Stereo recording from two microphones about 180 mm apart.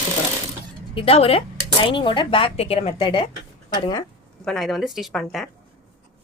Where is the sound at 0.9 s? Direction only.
30° left (ahead or behind).